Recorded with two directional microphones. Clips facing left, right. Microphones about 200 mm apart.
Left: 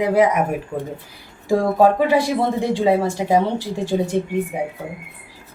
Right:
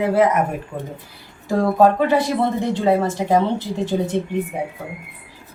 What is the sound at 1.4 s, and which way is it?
A woman's voice, 10° left (ahead or behind).